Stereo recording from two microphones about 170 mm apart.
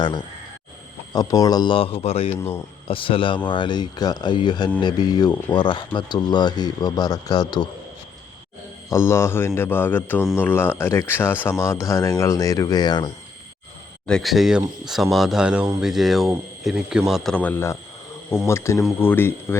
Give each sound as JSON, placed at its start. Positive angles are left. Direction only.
{"t": 1.1, "sound": "speech", "side_deg": 20}
{"t": 8.9, "sound": "speech", "side_deg": 15}
{"t": 14.1, "sound": "speech", "side_deg": 0}